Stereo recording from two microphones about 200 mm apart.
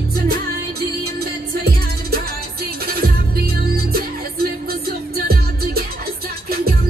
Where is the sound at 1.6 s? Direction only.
50° right (ahead or behind).